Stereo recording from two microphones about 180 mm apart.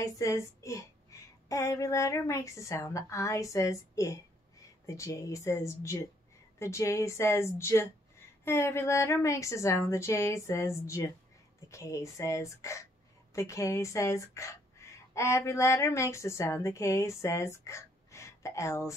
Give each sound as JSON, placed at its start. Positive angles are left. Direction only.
{"t": 0.0, "sound": "a woman's voice", "side_deg": 15}